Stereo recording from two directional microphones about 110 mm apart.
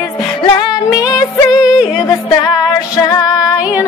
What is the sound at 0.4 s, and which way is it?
Music, 45° left (ahead or behind).